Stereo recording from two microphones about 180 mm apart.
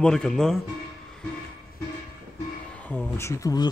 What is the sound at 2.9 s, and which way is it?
Speech, 10° left (ahead or behind).